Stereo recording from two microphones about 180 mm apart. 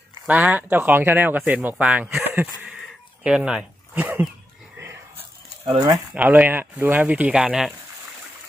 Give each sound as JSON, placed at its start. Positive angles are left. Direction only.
{"t": 0.3, "sound": "speech", "side_deg": -10}
{"t": 5.6, "sound": "speech", "side_deg": -20}
{"t": 6.1, "sound": "speech", "side_deg": -10}